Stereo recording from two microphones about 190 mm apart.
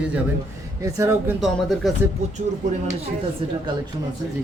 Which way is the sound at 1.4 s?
Centre (ahead or behind).